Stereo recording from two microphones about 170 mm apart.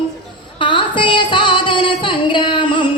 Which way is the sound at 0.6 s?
30° left (ahead or behind).